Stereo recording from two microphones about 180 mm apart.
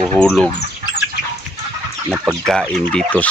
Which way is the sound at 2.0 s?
10° right (ahead or behind).